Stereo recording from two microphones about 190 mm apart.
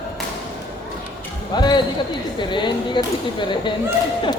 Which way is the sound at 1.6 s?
20° left (ahead or behind).